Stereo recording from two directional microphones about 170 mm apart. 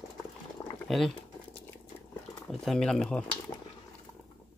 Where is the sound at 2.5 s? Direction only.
Centre (ahead or behind).